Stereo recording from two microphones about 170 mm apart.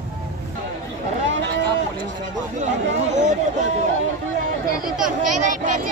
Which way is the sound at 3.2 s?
45° right (ahead or behind).